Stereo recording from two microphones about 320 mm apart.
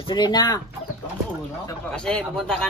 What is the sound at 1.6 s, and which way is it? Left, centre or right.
Speech, centre.